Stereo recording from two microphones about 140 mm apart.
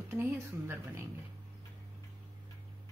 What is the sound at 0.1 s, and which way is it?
Speech, 15° right (ahead or behind).